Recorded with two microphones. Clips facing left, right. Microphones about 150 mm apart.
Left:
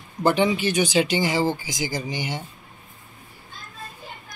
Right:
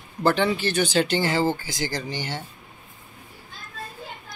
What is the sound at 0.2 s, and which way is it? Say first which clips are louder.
Speech: left 1 dB; 15° left (ahead or behind).